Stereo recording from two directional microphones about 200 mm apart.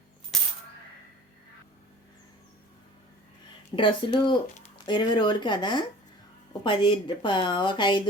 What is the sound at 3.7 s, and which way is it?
Speech, 25° left (ahead or behind).